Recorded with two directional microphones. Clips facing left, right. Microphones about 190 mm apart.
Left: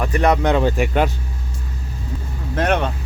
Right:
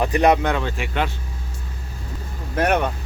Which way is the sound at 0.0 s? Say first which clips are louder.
Right 1 dB; 15° right (ahead or behind).